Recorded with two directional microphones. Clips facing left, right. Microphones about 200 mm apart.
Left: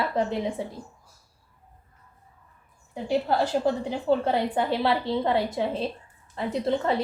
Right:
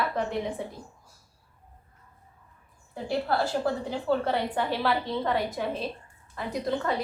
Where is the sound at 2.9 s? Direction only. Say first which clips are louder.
Left 3 dB; 20° left (ahead or behind).